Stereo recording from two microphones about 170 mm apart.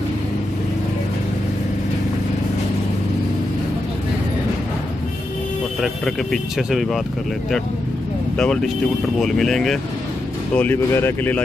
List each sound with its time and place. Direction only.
5.8 s speech: centre (ahead or behind)
9.2 s speech: centre (ahead or behind)